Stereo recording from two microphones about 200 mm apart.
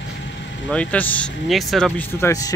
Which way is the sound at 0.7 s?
5° left (ahead or behind).